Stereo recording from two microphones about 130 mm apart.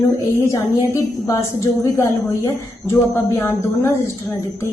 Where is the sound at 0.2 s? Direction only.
25° left (ahead or behind).